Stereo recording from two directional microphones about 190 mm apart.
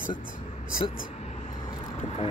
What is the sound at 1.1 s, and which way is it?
Vehicle, 35° left (ahead or behind).